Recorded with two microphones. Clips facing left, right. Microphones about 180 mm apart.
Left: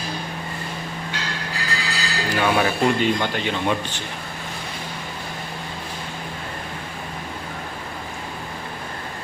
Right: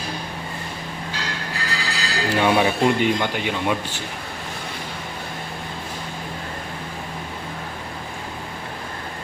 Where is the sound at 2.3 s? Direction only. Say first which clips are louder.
Right 2 dB; 20° right (ahead or behind).